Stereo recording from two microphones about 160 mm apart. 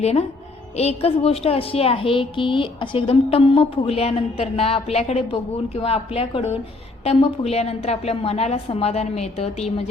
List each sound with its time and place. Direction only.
0.0 s a woman's voice: 40° left (ahead or behind)